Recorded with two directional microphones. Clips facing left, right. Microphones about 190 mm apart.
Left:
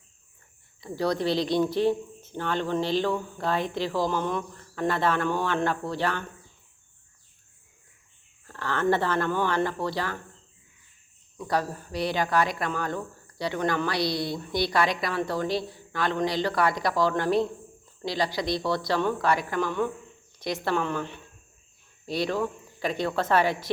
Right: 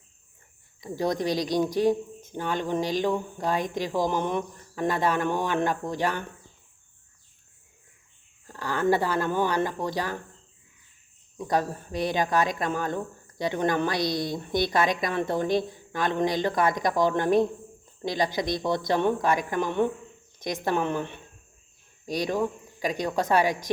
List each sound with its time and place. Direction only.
0.8 s speech: 15° right (ahead or behind)
8.4 s speech: 15° right (ahead or behind)
11.3 s speech: 20° right (ahead or behind)